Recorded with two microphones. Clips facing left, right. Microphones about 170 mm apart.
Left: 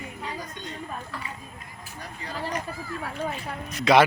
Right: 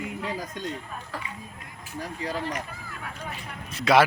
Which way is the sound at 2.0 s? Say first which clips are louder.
Right 6 dB; 90° right.